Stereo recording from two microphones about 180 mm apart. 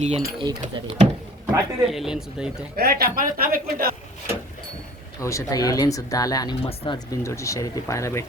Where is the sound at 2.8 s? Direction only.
60° right (ahead or behind).